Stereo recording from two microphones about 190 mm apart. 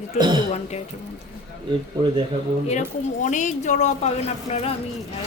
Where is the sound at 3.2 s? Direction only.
40° left (ahead or behind).